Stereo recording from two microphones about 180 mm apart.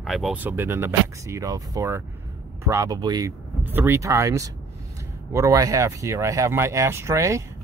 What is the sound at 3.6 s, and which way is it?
Speech, 10° right (ahead or behind).